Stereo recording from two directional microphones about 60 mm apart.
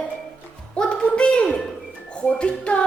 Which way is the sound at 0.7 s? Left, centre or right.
Centre.